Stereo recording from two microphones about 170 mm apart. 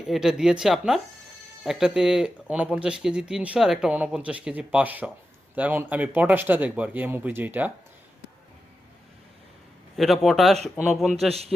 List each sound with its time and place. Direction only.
0.0 s speech: 5° right (ahead or behind)
9.9 s speech: centre (ahead or behind)